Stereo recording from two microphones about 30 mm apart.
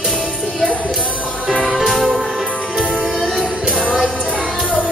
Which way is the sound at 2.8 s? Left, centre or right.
Right.